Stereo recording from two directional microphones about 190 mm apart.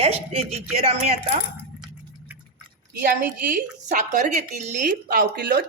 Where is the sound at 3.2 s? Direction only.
50° right (ahead or behind).